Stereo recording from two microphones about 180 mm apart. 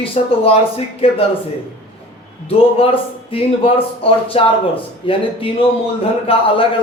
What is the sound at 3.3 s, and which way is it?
A man's voice, 30° left (ahead or behind).